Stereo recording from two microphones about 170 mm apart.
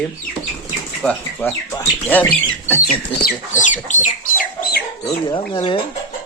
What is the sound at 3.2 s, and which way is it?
Speech, 55° left (ahead or behind).